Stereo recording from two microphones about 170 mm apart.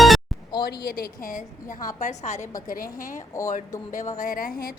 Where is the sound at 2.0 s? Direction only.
45° left (ahead or behind).